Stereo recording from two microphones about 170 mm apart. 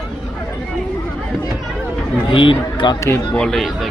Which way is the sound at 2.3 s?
30° left (ahead or behind).